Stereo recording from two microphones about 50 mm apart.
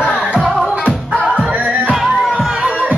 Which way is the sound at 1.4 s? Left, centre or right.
Right.